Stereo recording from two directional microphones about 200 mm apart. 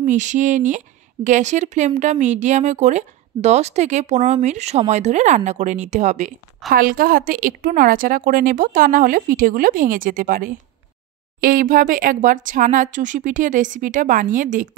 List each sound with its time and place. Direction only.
0.0 s a woman's voice: 35° right (ahead or behind)